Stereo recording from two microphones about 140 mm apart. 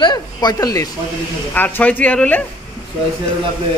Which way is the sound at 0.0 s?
30° left (ahead or behind).